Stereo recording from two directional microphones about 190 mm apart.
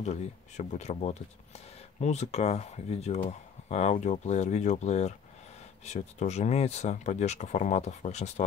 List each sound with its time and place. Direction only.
0.0 s speech: 35° left (ahead or behind)